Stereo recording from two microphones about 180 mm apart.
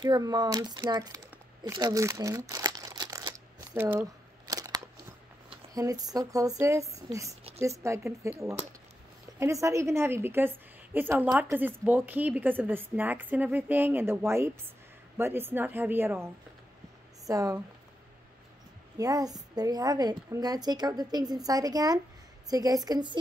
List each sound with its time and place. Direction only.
0.0 s crumpling: 25° right (ahead or behind)
4.5 s a sound: 20° right (ahead or behind)
5.5 s a woman's voice: 20° right (ahead or behind)
17.3 s a woman's voice: 20° right (ahead or behind)
18.9 s a woman's voice: 20° right (ahead or behind)